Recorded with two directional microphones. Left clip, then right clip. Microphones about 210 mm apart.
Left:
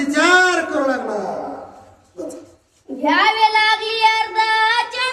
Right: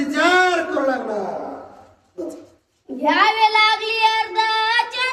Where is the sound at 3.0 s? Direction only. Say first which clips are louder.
Left 1 dB; 20° right (ahead or behind).